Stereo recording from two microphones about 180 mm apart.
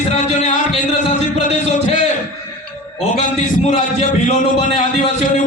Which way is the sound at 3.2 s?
45° left (ahead or behind).